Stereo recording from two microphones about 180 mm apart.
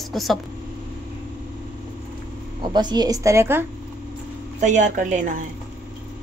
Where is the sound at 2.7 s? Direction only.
25° right (ahead or behind).